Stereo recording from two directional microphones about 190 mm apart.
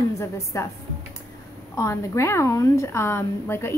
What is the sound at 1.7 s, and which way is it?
A woman's voice, 15° left (ahead or behind).